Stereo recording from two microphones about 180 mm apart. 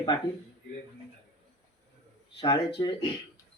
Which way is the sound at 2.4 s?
30° left (ahead or behind).